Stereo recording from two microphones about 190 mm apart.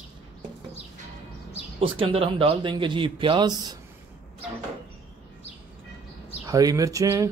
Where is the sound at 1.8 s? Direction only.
30° right (ahead or behind).